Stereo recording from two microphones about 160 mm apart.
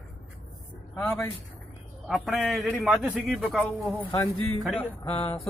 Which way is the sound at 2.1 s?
Centre (ahead or behind).